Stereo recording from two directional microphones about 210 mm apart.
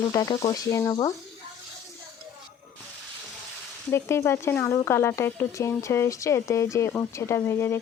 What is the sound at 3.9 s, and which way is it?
Speech, 10° left (ahead or behind).